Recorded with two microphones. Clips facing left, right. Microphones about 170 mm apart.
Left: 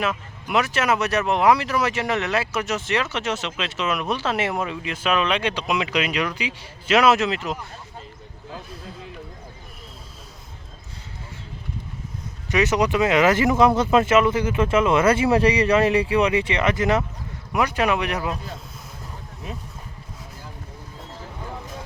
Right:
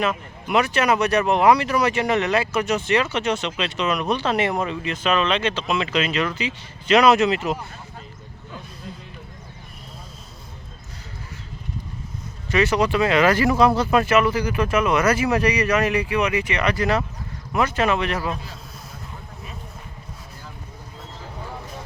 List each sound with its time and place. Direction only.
0.0 s speech: centre (ahead or behind)
12.5 s speech: 20° left (ahead or behind)